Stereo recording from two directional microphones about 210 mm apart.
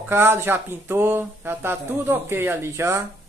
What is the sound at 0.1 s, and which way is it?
Speech, 10° right (ahead or behind).